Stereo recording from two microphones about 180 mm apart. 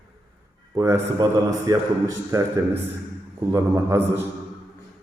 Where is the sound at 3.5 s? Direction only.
15° right (ahead or behind).